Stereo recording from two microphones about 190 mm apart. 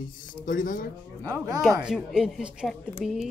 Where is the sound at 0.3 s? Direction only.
45° left (ahead or behind).